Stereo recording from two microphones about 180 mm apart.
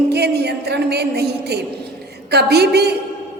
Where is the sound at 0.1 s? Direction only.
65° right (ahead or behind).